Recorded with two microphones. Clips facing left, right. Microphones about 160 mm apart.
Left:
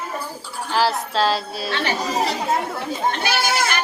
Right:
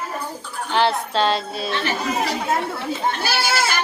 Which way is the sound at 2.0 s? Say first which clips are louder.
Left 1 dB; 35° left (ahead or behind).